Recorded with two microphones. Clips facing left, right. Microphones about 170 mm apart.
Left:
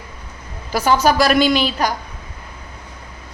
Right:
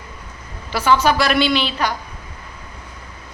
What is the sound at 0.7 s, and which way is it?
A woman's voice, 40° left (ahead or behind).